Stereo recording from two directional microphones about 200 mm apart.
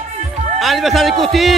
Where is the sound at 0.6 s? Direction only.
Centre (ahead or behind).